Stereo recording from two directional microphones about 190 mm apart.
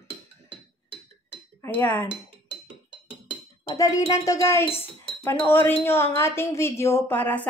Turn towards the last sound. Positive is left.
turn(degrees=10)  # may be behind; listen again after turning